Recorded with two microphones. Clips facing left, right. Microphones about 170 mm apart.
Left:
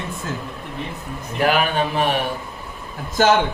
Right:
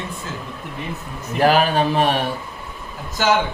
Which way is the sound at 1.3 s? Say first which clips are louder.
Right 3 dB; 35° right (ahead or behind).